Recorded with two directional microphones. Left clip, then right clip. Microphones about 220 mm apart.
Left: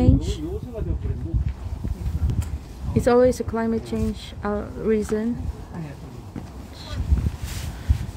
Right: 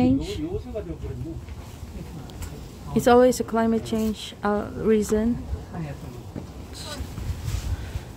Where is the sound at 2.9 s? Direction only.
10° right (ahead or behind).